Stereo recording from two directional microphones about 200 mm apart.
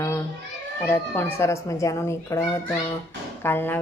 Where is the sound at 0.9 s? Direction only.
10° left (ahead or behind).